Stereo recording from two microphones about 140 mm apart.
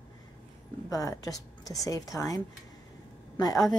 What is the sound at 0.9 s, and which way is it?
A woman's voice, 25° left (ahead or behind).